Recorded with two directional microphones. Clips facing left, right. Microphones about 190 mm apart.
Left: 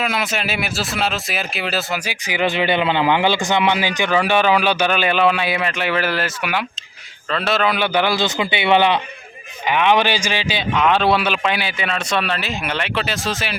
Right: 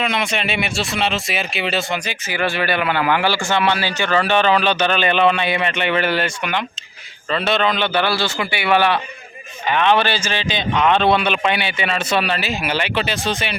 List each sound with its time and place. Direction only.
0.0 s a man's voice: 5° left (ahead or behind)
2.2 s a man's voice: 15° left (ahead or behind)